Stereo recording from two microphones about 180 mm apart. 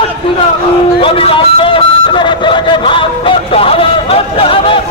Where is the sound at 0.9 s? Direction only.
30° left (ahead or behind).